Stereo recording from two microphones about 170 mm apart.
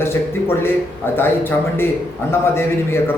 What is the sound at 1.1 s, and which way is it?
A man's voice, 10° left (ahead or behind).